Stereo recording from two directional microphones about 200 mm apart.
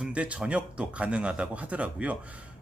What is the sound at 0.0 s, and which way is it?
A man's voice, 5° right (ahead or behind).